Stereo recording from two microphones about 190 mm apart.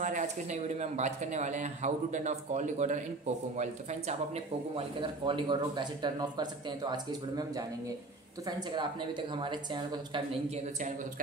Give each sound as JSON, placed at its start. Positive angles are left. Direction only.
{"t": 0.0, "sound": "speech", "side_deg": -40}
{"t": 4.7, "sound": "speech", "side_deg": -25}